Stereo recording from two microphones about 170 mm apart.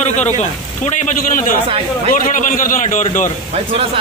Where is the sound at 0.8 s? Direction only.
45° left (ahead or behind).